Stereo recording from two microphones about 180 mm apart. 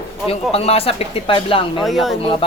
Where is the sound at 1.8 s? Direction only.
Centre (ahead or behind).